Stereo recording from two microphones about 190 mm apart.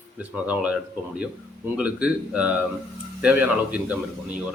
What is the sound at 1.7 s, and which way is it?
Speech, 5° right (ahead or behind).